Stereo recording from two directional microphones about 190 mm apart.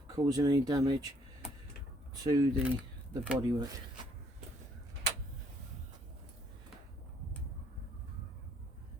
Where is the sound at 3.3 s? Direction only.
20° right (ahead or behind).